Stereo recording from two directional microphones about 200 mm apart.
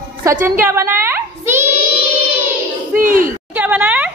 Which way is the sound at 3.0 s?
45° right (ahead or behind).